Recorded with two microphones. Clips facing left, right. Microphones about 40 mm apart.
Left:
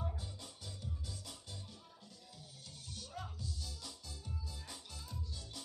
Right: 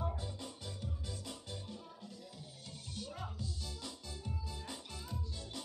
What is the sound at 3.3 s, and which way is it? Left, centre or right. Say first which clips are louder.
Music: right 3 dB; right.